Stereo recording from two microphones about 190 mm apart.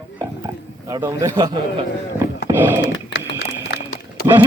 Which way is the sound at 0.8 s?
15° right (ahead or behind).